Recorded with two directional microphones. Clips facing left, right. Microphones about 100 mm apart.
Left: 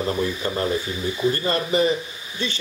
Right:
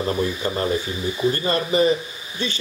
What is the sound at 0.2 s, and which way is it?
Speech, 15° right (ahead or behind).